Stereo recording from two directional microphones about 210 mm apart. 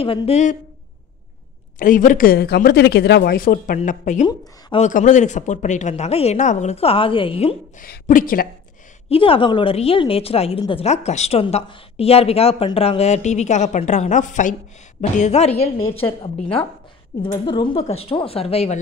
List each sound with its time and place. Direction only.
0.0 s a woman's voice: 25° left (ahead or behind)
1.8 s speech: 40° left (ahead or behind)
4.3 s a woman's voice: 20° left (ahead or behind)
4.8 s speech: 35° left (ahead or behind)
7.8 s speech: 40° left (ahead or behind)
9.1 s a woman's voice: 25° left (ahead or behind)